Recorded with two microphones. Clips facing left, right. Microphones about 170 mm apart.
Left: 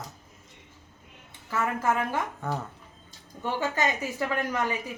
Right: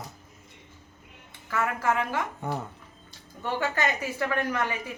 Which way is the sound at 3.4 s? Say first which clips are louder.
Even; 15° left (ahead or behind).